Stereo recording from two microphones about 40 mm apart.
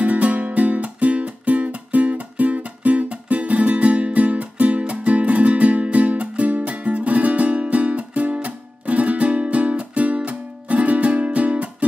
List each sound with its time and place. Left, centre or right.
0.0 s music: right